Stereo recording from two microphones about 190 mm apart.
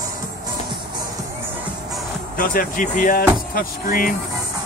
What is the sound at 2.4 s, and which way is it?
Speech, 45° left (ahead or behind).